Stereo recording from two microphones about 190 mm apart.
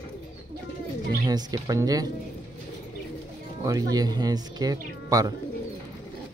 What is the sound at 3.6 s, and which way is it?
Speech, 20° right (ahead or behind).